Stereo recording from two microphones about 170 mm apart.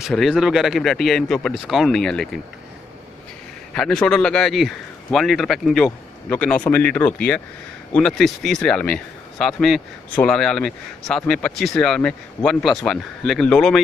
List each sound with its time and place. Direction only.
0.0 s speech: centre (ahead or behind)
3.7 s speech: 5° left (ahead or behind)